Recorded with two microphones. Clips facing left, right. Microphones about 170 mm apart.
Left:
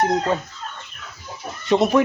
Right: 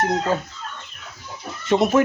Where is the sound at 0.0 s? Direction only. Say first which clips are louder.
Left 1 dB; centre (ahead or behind).